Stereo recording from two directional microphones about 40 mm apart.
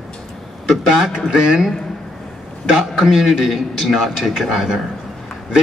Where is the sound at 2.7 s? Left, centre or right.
Centre.